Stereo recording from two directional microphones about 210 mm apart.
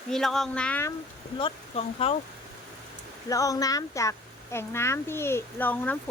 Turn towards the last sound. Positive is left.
turn(degrees=10)  # may be behind; listen again after turning